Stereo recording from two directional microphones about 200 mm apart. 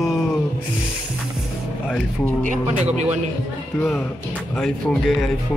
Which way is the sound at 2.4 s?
35° right (ahead or behind).